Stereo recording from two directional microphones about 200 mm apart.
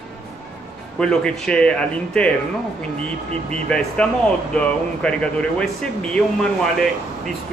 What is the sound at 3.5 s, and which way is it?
Speech, 5° left (ahead or behind).